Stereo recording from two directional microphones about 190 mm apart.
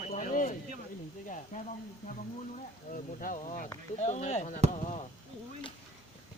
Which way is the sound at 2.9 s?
45° left (ahead or behind).